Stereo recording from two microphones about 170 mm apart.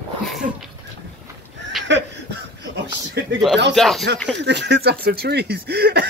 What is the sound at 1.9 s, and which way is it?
Chuckle, 90° right.